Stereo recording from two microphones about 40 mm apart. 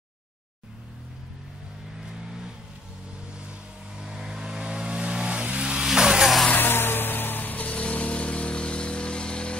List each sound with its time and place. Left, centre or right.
3.3 s vehicle: right
5.8 s vehicle: centre
6.5 s vehicle: left